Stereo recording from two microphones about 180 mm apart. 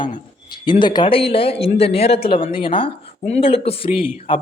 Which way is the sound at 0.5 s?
25° left (ahead or behind).